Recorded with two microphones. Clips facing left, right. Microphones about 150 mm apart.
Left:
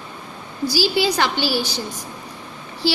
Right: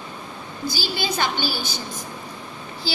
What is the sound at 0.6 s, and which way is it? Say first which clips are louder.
A woman's voice: left 8 dB; 75° left (ahead or behind).